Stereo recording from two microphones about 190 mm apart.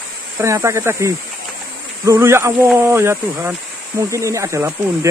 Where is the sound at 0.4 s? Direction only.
15° right (ahead or behind).